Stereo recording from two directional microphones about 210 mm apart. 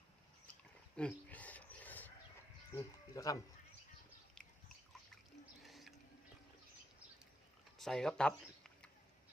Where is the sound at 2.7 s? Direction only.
15° left (ahead or behind).